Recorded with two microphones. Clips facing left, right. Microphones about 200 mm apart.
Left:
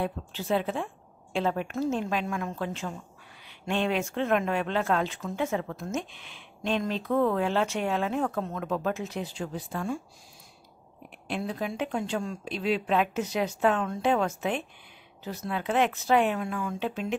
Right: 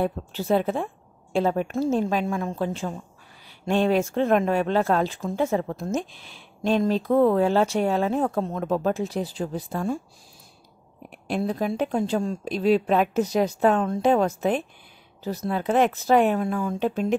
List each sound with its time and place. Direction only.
0.0 s speech: 40° right (ahead or behind)
11.2 s speech: 40° right (ahead or behind)